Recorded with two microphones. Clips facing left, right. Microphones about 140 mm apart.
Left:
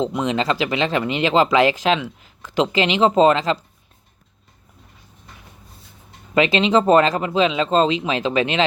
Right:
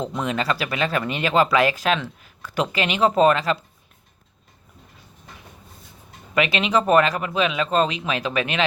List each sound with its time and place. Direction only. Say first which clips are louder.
0.0 s speech: left 4 dB; 20° left (ahead or behind)
6.3 s speech: left 4 dB; 25° left (ahead or behind)